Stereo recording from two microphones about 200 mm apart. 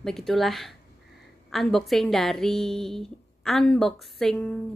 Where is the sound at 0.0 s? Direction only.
Centre (ahead or behind).